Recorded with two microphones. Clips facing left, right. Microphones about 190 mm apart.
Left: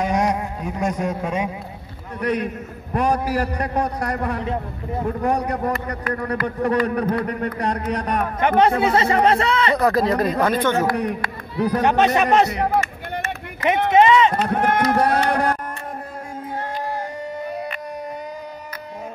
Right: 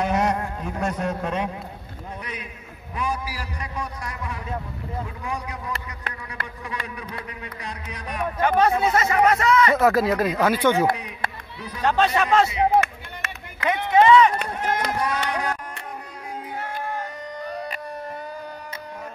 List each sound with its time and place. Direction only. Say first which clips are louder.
0.2 s a sound: left 2 dB; 10° left (ahead or behind)
2.1 s a man's voice: left 17 dB; 60° left (ahead or behind)
8.9 s speech: left 3 dB; 30° left (ahead or behind)
9.8 s speech: left 1 dB; 5° right (ahead or behind)
11.0 s a man's voice: left 9 dB; 60° left (ahead or behind)
11.8 s a man's voice: left 1 dB; 20° left (ahead or behind)
12.4 s speech: right 1 dB; 60° left (ahead or behind)
13.9 s speech: even; 20° left (ahead or behind)
14.5 s a man's voice: left 7 dB; 60° left (ahead or behind)